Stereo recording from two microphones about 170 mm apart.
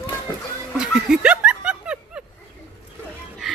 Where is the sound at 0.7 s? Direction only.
5° right (ahead or behind).